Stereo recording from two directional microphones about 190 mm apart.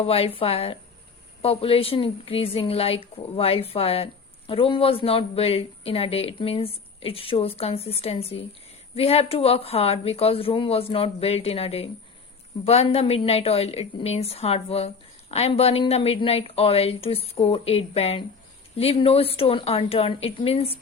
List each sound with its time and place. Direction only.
0.0 s a woman's voice: 30° left (ahead or behind)